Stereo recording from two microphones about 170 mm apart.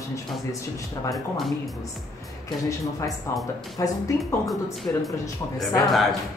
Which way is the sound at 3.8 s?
20° left (ahead or behind).